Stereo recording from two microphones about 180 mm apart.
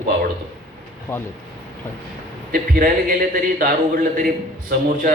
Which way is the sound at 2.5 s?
55° right (ahead or behind).